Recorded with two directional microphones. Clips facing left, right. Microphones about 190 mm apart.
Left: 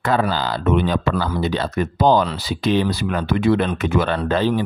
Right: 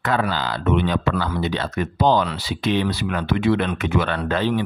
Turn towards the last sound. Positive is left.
turn(degrees=35)  # may be behind; listen again after turning